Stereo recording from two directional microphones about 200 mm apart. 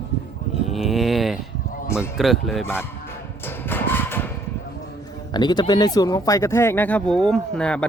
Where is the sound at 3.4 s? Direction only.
10° left (ahead or behind).